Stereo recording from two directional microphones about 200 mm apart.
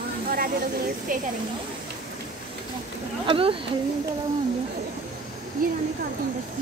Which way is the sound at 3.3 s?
25° right (ahead or behind).